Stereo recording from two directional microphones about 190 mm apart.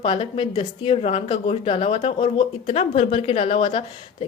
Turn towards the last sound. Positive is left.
turn(degrees=30)  # may be behind; listen again after turning